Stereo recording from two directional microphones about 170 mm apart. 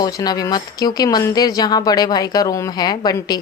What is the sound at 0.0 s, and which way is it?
Speech, 20° left (ahead or behind).